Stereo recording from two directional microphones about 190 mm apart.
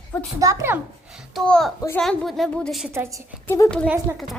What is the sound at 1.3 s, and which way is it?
A child's voice, 5° left (ahead or behind).